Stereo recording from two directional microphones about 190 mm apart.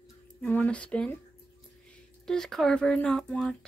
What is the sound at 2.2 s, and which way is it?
Speech, centre (ahead or behind).